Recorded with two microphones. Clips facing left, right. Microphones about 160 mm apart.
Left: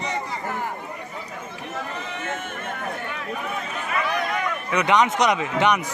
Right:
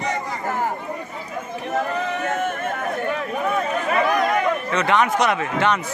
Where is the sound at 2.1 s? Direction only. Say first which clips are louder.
Right 7 dB; 50° right (ahead or behind).